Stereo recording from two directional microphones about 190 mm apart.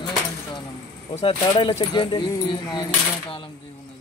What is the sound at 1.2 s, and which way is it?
Speech, 30° left (ahead or behind).